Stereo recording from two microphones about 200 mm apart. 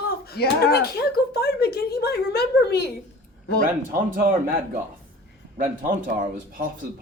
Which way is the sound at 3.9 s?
45° right (ahead or behind).